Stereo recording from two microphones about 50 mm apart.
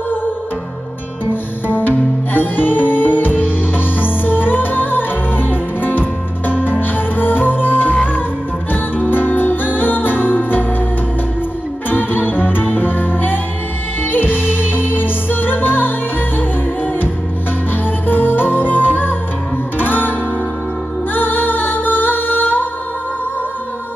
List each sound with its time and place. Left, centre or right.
1.3 s music: left
11.9 s music: left
19.8 s guitar: left
21.1 s music: left